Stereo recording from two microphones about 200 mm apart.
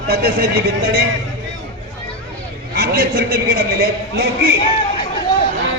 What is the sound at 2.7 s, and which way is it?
Speech, 50° right (ahead or behind).